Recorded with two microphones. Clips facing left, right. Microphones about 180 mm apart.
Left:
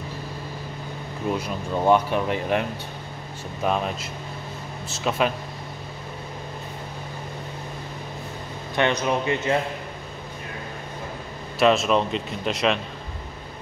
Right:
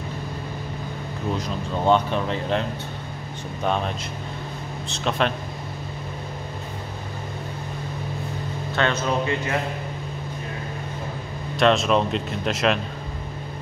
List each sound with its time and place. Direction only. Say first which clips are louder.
1.4 s speech: right 1 dB; 10° left (ahead or behind)
3.6 s speech: even; 5° left (ahead or behind)
8.7 s speech: left 1 dB; 15° left (ahead or behind)
11.5 s speech: even; centre (ahead or behind)